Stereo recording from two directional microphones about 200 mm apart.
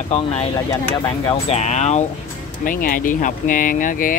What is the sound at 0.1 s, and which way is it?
Speech, 35° left (ahead or behind).